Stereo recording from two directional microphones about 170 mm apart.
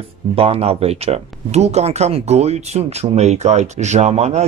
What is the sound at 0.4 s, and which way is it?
Speech, 35° right (ahead or behind).